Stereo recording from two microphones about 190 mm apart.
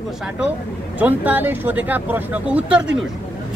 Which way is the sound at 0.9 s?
10° right (ahead or behind).